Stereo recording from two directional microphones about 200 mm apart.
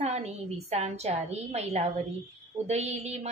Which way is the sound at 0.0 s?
35° right (ahead or behind).